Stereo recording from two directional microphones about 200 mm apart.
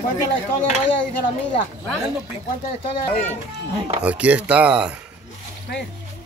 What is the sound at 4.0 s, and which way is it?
Speech, 5° right (ahead or behind).